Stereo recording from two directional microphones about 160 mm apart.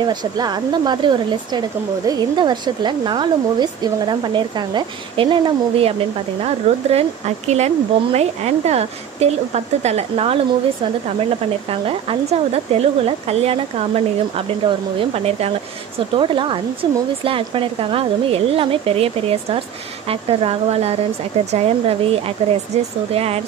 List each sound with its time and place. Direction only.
0.0 s speech: 25° right (ahead or behind)
11.7 s speech: 35° right (ahead or behind)